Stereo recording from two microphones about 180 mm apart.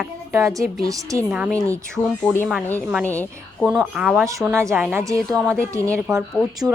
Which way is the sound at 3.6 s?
5° right (ahead or behind).